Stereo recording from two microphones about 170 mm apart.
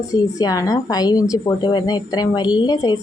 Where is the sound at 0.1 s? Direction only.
20° left (ahead or behind).